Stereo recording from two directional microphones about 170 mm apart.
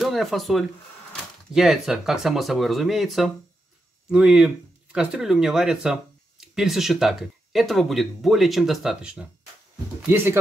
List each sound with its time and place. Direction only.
0.0 s speech: centre (ahead or behind)